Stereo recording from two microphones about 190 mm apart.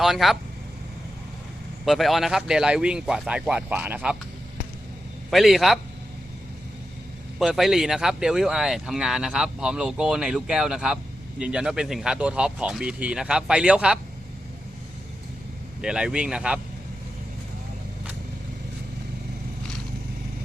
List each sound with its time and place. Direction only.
0.0 s speech: centre (ahead or behind)
1.8 s speech: centre (ahead or behind)
5.3 s speech: centre (ahead or behind)
7.3 s speech: centre (ahead or behind)
15.8 s speech: 5° right (ahead or behind)